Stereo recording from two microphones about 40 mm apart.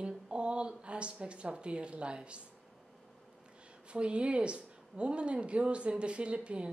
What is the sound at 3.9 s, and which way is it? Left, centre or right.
Speech, right.